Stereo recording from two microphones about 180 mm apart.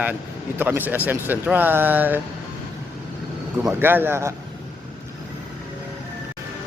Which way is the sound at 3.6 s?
10° right (ahead or behind).